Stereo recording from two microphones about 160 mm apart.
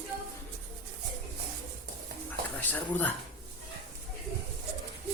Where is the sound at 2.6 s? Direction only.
10° left (ahead or behind).